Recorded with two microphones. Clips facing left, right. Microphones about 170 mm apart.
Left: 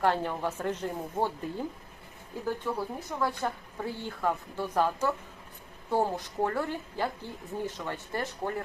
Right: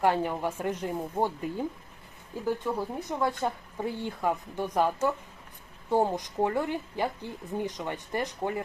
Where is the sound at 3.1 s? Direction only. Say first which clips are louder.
Right 3 dB; 20° right (ahead or behind).